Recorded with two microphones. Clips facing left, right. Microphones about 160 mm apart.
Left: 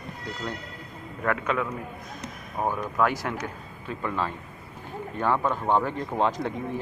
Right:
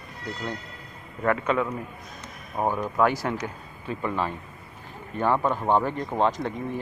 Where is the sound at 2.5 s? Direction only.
10° right (ahead or behind).